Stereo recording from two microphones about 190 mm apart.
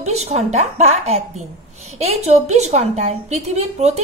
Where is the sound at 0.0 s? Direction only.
35° right (ahead or behind).